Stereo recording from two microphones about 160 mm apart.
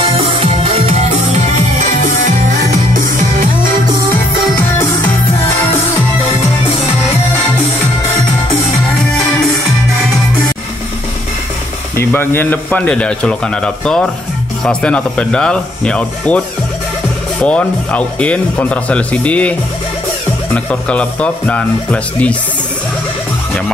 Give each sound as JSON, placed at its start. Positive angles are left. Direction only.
{"t": 0.0, "sound": "music", "side_deg": -35}
{"t": 2.9, "sound": "music", "side_deg": -60}
{"t": 12.0, "sound": "speech", "side_deg": 15}
{"t": 20.5, "sound": "speech", "side_deg": 5}